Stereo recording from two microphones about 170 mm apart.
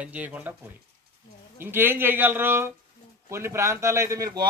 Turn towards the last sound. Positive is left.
turn(degrees=-20)  # may be behind; listen again after turning